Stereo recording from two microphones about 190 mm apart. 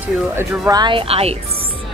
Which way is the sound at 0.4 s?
15° right (ahead or behind).